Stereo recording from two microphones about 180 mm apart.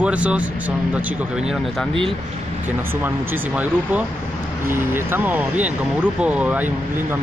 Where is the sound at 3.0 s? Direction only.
10° right (ahead or behind).